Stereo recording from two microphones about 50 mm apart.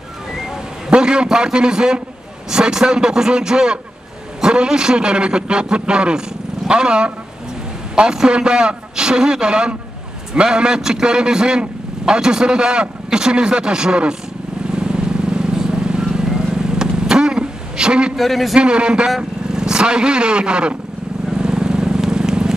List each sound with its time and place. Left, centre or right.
0.8 s a man's voice: centre
14.8 s vehicle: centre
18.1 s speech: centre
18.6 s speech: centre
21.3 s vehicle: centre